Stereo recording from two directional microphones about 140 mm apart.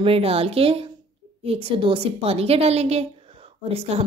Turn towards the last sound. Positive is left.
turn(degrees=-45)  # may be behind; listen again after turning